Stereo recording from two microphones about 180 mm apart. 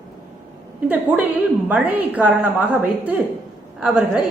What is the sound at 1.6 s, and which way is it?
A woman's voice, 10° right (ahead or behind).